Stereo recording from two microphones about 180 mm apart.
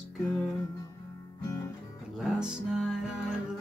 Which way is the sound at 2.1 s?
Centre (ahead or behind).